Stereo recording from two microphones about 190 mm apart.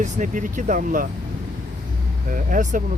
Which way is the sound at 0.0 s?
40° right (ahead or behind).